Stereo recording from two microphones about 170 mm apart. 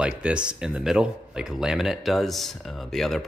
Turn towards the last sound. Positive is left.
turn(degrees=0)  # may be behind; listen again after turning